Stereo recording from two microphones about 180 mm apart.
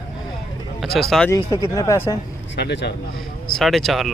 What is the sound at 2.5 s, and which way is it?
Speech, 70° left (ahead or behind).